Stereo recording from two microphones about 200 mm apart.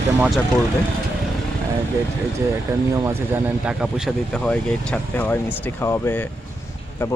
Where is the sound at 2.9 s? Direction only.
15° right (ahead or behind).